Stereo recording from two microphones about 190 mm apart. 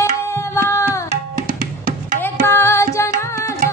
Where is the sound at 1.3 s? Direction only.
45° right (ahead or behind).